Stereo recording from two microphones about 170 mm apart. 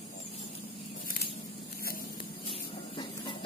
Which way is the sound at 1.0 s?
60° left (ahead or behind).